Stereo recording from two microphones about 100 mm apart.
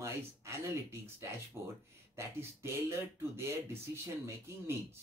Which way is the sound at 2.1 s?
25° right (ahead or behind).